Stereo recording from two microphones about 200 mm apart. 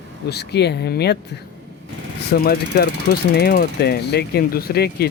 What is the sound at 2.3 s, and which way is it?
Mechanisms, 45° left (ahead or behind).